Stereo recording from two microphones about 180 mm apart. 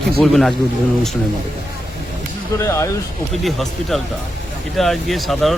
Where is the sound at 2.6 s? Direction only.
15° left (ahead or behind).